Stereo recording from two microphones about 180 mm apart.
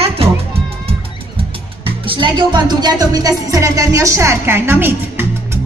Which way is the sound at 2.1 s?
25° right (ahead or behind).